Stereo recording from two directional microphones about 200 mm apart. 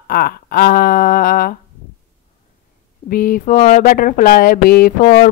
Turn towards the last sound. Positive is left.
turn(degrees=45)  # may be behind; listen again after turning